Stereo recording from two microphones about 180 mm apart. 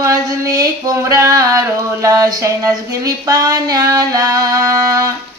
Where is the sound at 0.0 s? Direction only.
20° right (ahead or behind).